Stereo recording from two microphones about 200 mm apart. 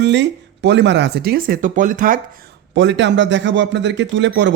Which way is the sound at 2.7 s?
65° right (ahead or behind).